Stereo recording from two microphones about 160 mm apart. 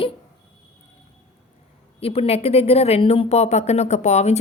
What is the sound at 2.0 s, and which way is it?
A woman's voice, 40° left (ahead or behind).